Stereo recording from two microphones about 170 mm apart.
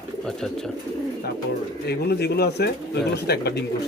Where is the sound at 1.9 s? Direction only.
75° left (ahead or behind).